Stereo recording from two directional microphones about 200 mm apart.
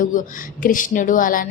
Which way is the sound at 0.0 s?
40° left (ahead or behind).